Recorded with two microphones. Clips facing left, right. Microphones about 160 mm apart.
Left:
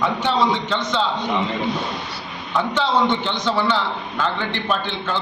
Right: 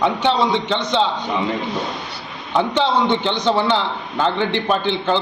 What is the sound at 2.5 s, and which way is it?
A man's voice, 20° right (ahead or behind).